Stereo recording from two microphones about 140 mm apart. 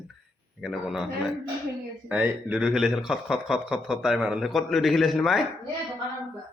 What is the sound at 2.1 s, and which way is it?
A man's voice, 10° right (ahead or behind).